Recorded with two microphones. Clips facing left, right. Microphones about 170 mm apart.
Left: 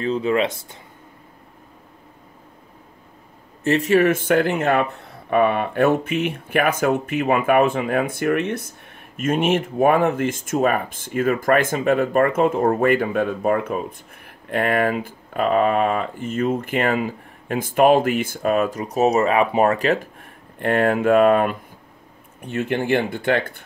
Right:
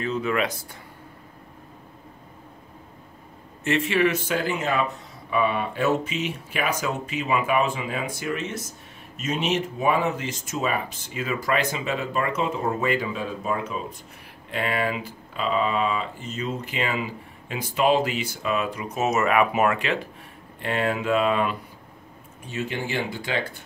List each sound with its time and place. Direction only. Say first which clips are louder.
0.0 s speech: left 5 dB; 30° left (ahead or behind)
3.6 s speech: left 6 dB; 40° left (ahead or behind)
20.5 s speech: left 7 dB; 50° left (ahead or behind)